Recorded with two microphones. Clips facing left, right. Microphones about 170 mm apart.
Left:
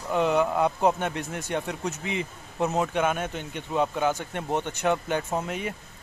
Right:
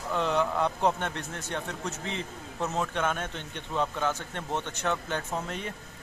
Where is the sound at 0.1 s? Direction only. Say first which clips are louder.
Left 5 dB; 10° left (ahead or behind).